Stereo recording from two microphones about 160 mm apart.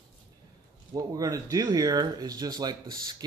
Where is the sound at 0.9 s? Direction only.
20° right (ahead or behind).